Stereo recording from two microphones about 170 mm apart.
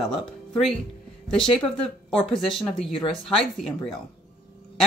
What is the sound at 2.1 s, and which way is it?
Speech, centre (ahead or behind).